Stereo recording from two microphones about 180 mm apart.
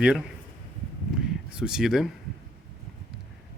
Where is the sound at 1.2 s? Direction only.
5° right (ahead or behind).